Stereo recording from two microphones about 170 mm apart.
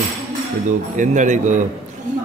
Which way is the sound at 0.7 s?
45° right (ahead or behind).